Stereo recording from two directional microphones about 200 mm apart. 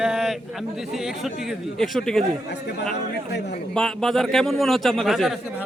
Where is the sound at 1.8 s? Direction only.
5° left (ahead or behind).